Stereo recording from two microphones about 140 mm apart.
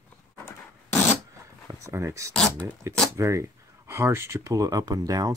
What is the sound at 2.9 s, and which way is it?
Speech, 20° right (ahead or behind).